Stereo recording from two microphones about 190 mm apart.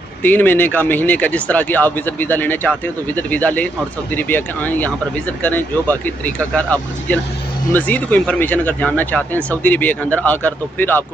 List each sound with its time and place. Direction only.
0.2 s speech: 10° left (ahead or behind)